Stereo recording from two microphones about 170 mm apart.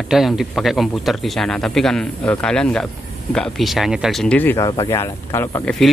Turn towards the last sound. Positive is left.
turn(degrees=15)  # may be behind; listen again after turning